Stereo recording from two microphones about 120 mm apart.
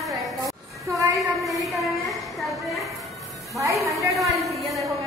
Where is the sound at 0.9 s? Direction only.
30° right (ahead or behind).